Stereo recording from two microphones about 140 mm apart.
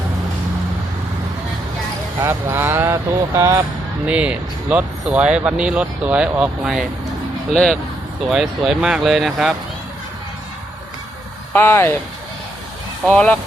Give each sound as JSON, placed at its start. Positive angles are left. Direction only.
{"t": 2.2, "sound": "speech", "side_deg": -15}
{"t": 4.0, "sound": "speech", "side_deg": -10}
{"t": 7.5, "sound": "speech", "side_deg": 5}
{"t": 11.5, "sound": "speech", "side_deg": 20}
{"t": 13.1, "sound": "speech", "side_deg": 10}